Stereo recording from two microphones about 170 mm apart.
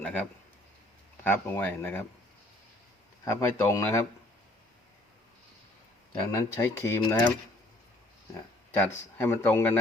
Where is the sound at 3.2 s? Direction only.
15° left (ahead or behind).